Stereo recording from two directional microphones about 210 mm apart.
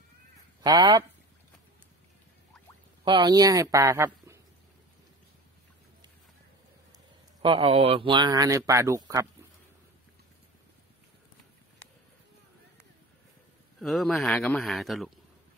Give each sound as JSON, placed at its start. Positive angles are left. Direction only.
{"t": 0.7, "sound": "a man's voice", "side_deg": -20}
{"t": 3.1, "sound": "a man's voice", "side_deg": -20}
{"t": 7.4, "sound": "a man's voice", "side_deg": -25}
{"t": 13.7, "sound": "a man's voice", "side_deg": 0}